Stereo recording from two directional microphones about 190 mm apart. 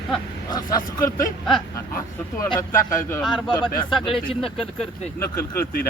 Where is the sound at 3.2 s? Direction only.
Centre (ahead or behind).